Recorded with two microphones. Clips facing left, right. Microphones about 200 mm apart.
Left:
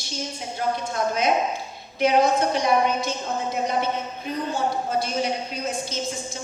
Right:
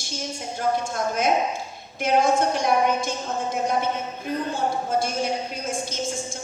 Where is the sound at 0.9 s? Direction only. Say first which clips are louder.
Left 4 dB; 50° right (ahead or behind).